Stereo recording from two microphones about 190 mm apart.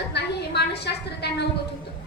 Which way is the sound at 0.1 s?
60° left (ahead or behind).